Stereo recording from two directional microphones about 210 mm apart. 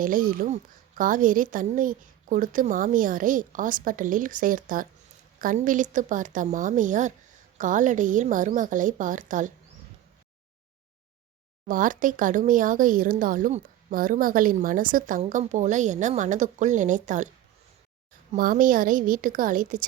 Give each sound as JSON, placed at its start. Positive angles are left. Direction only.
{"t": 0.0, "sound": "speech", "side_deg": -40}
{"t": 11.6, "sound": "speech", "side_deg": -40}
{"t": 18.3, "sound": "speech", "side_deg": -40}